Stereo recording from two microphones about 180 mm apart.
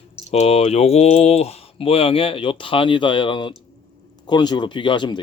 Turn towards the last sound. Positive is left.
turn(degrees=25)  # may be behind; listen again after turning